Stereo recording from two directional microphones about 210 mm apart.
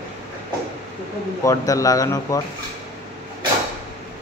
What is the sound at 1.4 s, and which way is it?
Speech, 15° left (ahead or behind).